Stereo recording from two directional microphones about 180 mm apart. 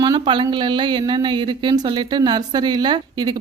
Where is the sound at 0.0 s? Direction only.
25° right (ahead or behind).